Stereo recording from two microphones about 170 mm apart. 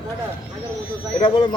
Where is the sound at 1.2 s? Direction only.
30° left (ahead or behind).